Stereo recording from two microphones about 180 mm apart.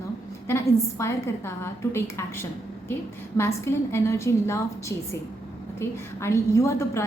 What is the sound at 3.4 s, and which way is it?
A woman's voice, 15° left (ahead or behind).